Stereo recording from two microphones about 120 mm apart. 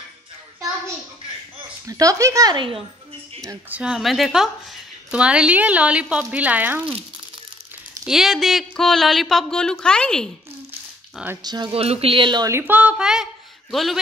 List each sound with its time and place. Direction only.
1.9 s speech: 30° right (ahead or behind)
2.5 s speech: 45° right (ahead or behind)
3.6 s speech: 10° right (ahead or behind)
8.0 s speech: 5° right (ahead or behind)
11.4 s speech: 35° right (ahead or behind)
11.7 s speech: 55° right (ahead or behind)
12.4 s a sound: 20° right (ahead or behind); by 13.9 s centre (ahead or behind)